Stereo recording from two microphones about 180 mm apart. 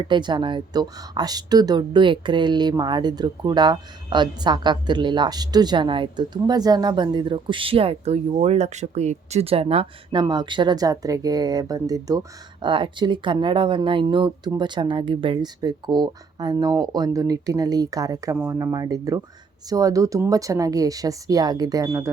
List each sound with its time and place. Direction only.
0.0 s speech: 25° right (ahead or behind)